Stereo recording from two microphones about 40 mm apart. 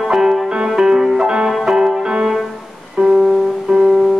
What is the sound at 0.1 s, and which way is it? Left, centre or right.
Music, centre.